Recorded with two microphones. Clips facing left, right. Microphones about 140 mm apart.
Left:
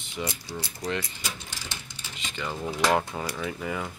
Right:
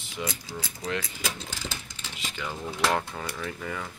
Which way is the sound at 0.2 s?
Centre (ahead or behind).